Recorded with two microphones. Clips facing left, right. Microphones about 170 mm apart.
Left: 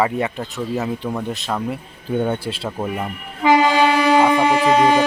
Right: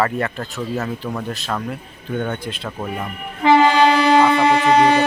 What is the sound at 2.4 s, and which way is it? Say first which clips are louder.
Speech: left 3 dB; 30° left (ahead or behind).